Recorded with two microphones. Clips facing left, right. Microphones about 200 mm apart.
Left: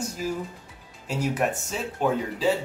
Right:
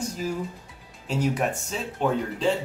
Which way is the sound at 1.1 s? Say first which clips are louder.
Right 1 dB; 5° left (ahead or behind).